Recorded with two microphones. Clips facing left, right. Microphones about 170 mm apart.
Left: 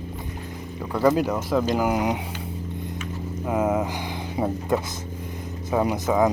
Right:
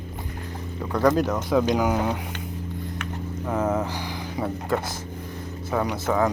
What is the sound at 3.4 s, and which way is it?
Speech, 10° left (ahead or behind).